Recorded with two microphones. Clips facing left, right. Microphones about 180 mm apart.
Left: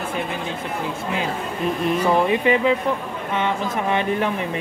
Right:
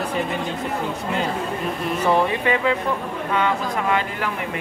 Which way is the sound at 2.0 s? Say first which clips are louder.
Even; 20° left (ahead or behind).